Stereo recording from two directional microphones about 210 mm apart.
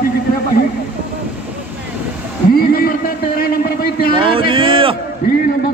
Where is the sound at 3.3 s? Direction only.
45° left (ahead or behind).